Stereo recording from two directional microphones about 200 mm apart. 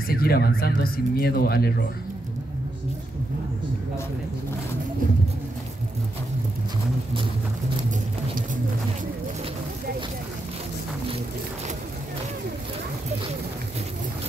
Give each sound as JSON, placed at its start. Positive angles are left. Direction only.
{"t": 0.1, "sound": "speech", "side_deg": 50}